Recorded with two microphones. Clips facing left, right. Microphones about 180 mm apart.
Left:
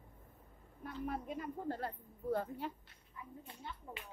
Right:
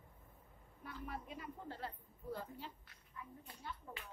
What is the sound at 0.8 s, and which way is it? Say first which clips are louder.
A woman's voice: left 7 dB; 50° left (ahead or behind).